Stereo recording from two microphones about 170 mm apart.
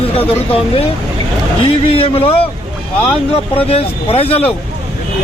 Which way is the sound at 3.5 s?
35° left (ahead or behind).